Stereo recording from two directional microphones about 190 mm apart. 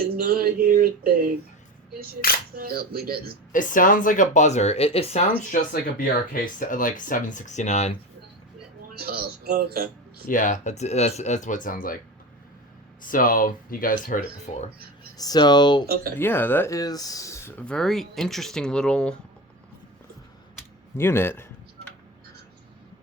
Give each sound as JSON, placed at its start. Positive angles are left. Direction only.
{"t": 0.0, "sound": "a sound", "side_deg": -50}
{"t": 2.2, "sound": "speech", "side_deg": 50}
{"t": 2.6, "sound": "speech", "side_deg": -55}
{"t": 3.5, "sound": "speech", "side_deg": 45}
{"t": 6.3, "sound": "speech", "side_deg": 45}
{"t": 8.9, "sound": "speech", "side_deg": -55}
{"t": 10.2, "sound": "speech", "side_deg": 45}
{"t": 13.0, "sound": "speech", "side_deg": 45}
{"t": 15.2, "sound": "speech", "side_deg": 20}
{"t": 16.1, "sound": "speech", "side_deg": 10}
{"t": 21.0, "sound": "speech", "side_deg": 10}